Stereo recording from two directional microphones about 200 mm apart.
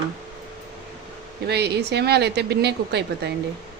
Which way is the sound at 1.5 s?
55° right (ahead or behind).